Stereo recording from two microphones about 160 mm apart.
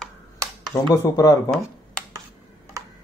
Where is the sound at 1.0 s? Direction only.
20° left (ahead or behind).